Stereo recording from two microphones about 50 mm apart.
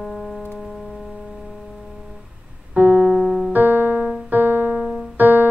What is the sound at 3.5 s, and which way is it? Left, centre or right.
Keyboard, right.